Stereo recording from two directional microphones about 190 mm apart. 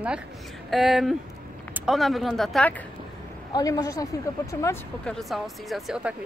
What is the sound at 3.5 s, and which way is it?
Speech, 20° left (ahead or behind).